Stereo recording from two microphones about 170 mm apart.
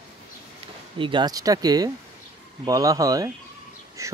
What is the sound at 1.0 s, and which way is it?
Speech, 30° right (ahead or behind).